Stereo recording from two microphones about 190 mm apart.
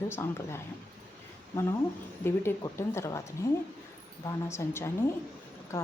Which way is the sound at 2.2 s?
10° left (ahead or behind).